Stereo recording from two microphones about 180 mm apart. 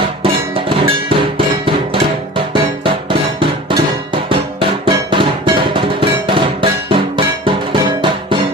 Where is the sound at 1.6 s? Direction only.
30° right (ahead or behind).